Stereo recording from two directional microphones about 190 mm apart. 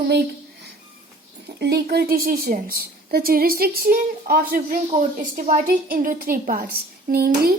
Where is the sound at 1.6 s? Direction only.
60° right (ahead or behind).